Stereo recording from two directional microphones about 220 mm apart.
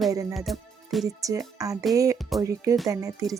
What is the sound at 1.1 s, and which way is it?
A woman's voice, 15° right (ahead or behind).